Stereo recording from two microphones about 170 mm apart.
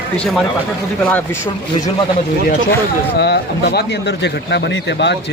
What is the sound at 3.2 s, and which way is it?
Speech, 75° left (ahead or behind).